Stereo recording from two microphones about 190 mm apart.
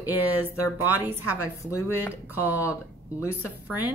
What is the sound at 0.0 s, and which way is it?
Speech, 10° right (ahead or behind).